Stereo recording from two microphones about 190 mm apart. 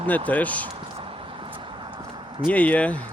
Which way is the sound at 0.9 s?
25° right (ahead or behind).